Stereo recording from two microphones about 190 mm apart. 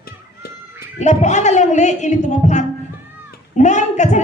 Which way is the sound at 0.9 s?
40° left (ahead or behind).